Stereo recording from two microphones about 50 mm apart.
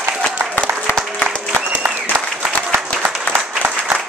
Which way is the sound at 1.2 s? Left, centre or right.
Right.